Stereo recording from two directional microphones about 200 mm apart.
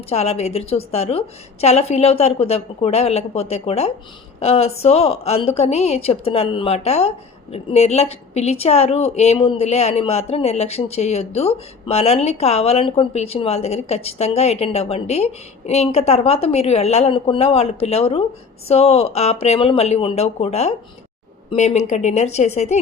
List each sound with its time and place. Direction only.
0.1 s a woman's voice: 30° left (ahead or behind)